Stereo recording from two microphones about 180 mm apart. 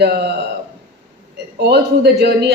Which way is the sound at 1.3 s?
65° right (ahead or behind).